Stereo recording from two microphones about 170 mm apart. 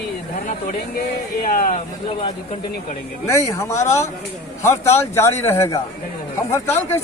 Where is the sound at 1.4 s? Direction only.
50° left (ahead or behind).